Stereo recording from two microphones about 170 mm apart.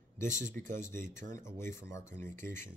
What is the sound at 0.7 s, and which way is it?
Speech, 15° left (ahead or behind).